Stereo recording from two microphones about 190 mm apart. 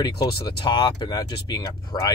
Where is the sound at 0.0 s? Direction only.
20° left (ahead or behind).